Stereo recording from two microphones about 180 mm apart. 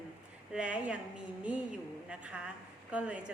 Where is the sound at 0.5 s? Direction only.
5° right (ahead or behind).